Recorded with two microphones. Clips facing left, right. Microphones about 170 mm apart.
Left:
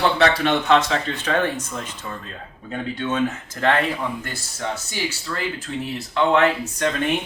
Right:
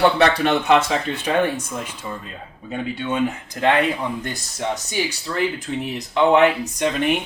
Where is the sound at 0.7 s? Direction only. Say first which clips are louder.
Right 1 dB; 10° right (ahead or behind).